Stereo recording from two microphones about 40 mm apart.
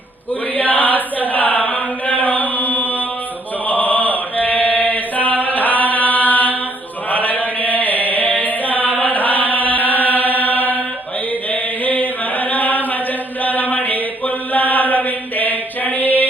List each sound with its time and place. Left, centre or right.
0.5 s chant: left